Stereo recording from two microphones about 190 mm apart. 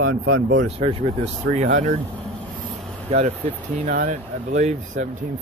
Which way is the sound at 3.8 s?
40° right (ahead or behind).